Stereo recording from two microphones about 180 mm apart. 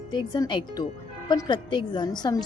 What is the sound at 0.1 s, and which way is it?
A woman's voice, 25° left (ahead or behind).